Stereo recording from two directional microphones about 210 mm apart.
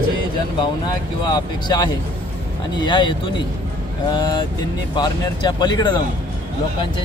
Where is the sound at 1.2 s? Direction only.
20° left (ahead or behind).